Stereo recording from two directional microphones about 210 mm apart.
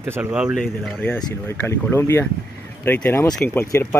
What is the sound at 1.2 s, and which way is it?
Speech, 10° left (ahead or behind).